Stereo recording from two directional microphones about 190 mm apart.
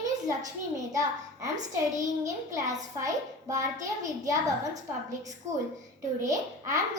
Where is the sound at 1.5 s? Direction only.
40° right (ahead or behind).